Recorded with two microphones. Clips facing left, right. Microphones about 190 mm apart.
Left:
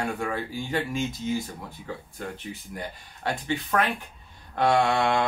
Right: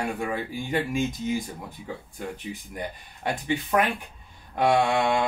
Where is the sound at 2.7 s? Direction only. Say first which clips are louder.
Right 2 dB; 15° right (ahead or behind).